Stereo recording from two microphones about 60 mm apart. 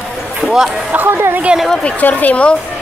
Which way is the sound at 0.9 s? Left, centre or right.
Right.